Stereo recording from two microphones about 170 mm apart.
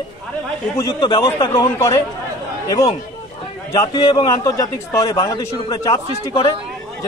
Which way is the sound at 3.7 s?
25° left (ahead or behind).